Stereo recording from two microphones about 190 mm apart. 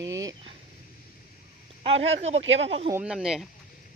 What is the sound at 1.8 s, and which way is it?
Speech, 30° right (ahead or behind).